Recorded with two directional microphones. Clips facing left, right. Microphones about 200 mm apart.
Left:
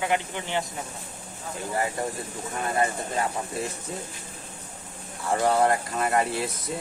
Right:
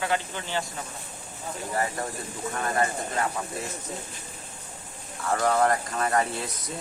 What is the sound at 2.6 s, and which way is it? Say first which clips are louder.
Speech: left 1 dB; 20° left (ahead or behind).